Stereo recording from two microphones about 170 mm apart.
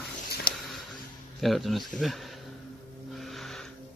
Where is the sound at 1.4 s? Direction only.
Centre (ahead or behind).